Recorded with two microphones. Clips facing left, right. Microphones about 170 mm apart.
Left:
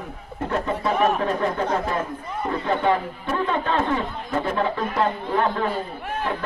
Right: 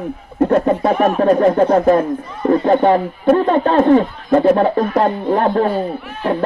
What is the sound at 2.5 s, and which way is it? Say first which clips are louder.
A man's voice: right 10 dB; 40° right (ahead or behind).